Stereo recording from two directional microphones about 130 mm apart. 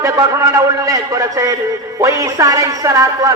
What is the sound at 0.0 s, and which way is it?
A man's voice, 25° right (ahead or behind).